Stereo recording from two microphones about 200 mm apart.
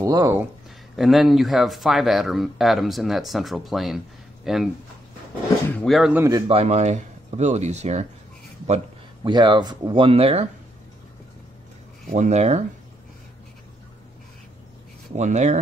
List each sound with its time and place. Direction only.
0.0 s speech: 15° right (ahead or behind)
0.9 s speech: centre (ahead or behind)
5.7 s speech: 5° left (ahead or behind); by 6.4 s 10° right (ahead or behind)
6.4 s speech: 30° right (ahead or behind)
12.1 s speech: 35° right (ahead or behind)
15.1 s speech: 35° right (ahead or behind)